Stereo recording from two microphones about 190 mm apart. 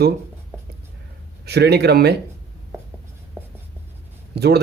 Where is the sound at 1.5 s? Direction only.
60° right (ahead or behind).